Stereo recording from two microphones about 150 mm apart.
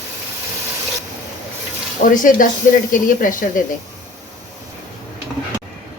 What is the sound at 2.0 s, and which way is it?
A woman's voice, 60° left (ahead or behind).